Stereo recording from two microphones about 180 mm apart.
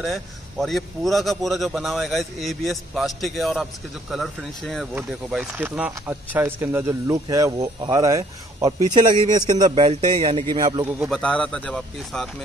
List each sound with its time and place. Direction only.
0.0 s a man's voice: centre (ahead or behind); by 10.9 s 25° right (ahead or behind)
11.1 s a man's voice: 5° left (ahead or behind)